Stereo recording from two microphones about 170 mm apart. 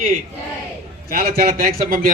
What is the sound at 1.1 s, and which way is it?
A man's voice, 60° right (ahead or behind).